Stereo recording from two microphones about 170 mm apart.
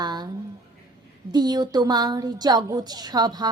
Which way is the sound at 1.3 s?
25° right (ahead or behind).